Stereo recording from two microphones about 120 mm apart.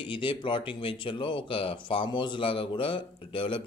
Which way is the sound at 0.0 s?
45° left (ahead or behind).